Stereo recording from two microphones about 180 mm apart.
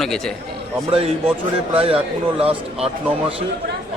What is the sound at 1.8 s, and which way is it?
Speech, 30° right (ahead or behind).